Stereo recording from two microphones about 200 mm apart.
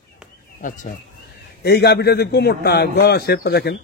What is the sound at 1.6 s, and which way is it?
A man's voice, 55° left (ahead or behind).